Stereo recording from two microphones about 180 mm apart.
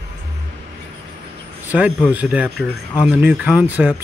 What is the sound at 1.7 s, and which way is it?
Speech, 10° right (ahead or behind).